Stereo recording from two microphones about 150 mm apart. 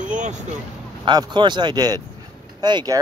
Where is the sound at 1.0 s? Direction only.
30° right (ahead or behind).